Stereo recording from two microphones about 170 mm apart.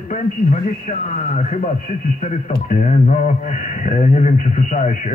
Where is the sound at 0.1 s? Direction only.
45° left (ahead or behind).